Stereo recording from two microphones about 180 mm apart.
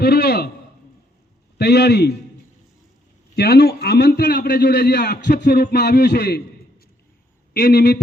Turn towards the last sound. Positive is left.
turn(degrees=70)  # may be behind; listen again after turning